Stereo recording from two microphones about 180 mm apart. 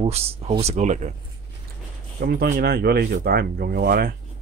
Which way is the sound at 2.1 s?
60° right (ahead or behind).